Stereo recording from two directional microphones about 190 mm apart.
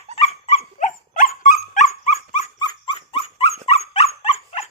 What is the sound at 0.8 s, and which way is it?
Dog, 45° left (ahead or behind).